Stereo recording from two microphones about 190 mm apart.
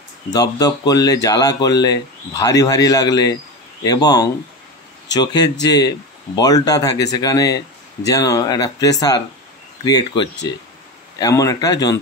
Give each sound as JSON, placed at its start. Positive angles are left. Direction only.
{"t": 0.3, "sound": "speech", "side_deg": 20}